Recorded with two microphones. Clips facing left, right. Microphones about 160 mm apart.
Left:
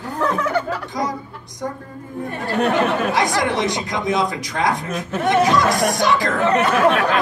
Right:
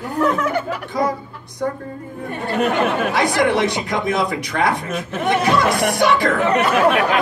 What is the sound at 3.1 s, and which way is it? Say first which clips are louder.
Speech: right 2 dB; 60° right (ahead or behind).